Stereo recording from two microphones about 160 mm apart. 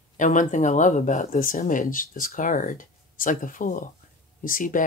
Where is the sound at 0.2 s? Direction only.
50° left (ahead or behind).